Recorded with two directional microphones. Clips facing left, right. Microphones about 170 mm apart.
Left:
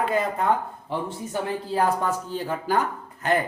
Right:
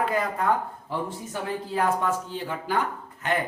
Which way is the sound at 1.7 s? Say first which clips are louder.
Left 1 dB; 40° left (ahead or behind).